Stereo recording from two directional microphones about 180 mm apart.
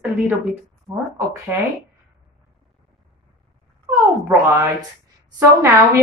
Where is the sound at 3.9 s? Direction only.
15° right (ahead or behind).